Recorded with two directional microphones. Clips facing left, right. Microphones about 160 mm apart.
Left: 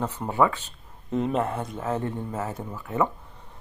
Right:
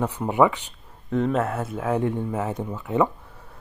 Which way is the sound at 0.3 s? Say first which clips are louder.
Right 3 dB; 15° right (ahead or behind).